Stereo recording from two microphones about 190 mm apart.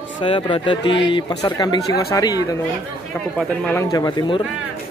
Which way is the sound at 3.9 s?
20° left (ahead or behind).